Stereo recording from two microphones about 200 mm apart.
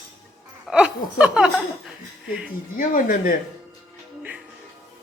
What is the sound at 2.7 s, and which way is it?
Speech, 45° left (ahead or behind).